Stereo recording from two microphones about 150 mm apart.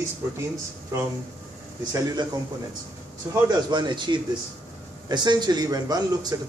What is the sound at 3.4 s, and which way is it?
A man's voice, 30° right (ahead or behind).